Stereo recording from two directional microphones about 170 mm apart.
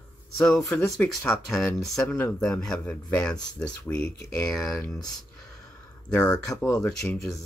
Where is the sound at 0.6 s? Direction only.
15° left (ahead or behind).